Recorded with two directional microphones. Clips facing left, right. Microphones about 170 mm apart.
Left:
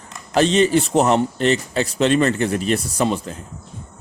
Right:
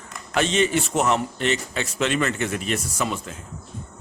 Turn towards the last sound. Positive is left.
turn(degrees=35)  # may be behind; listen again after turning